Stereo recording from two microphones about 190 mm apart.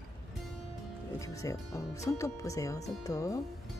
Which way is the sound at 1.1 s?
15° left (ahead or behind).